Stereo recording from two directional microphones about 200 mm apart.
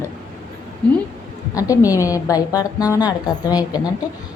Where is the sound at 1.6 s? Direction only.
15° left (ahead or behind).